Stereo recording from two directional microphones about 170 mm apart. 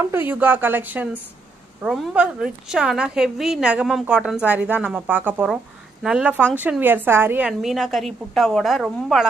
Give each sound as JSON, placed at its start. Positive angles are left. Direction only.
{"t": 0.0, "sound": "a woman's voice", "side_deg": -15}